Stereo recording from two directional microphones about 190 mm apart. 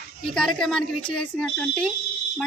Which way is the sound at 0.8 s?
25° left (ahead or behind).